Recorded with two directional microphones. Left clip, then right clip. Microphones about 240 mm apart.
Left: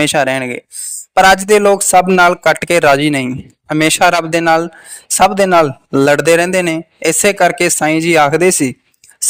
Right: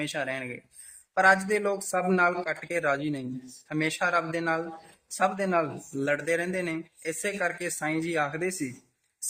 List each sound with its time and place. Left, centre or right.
0.0 s a man's voice: left